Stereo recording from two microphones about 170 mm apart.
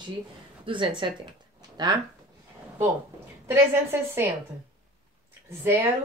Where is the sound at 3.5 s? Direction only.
15° right (ahead or behind).